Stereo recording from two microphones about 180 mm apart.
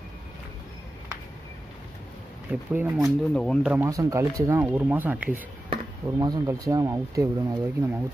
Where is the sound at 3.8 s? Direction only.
20° right (ahead or behind).